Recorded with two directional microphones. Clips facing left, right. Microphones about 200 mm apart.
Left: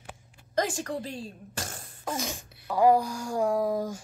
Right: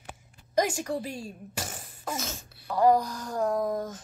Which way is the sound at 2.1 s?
15° left (ahead or behind).